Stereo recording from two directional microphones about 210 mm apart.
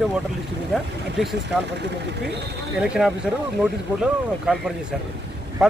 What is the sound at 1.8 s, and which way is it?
Speech, 55° right (ahead or behind).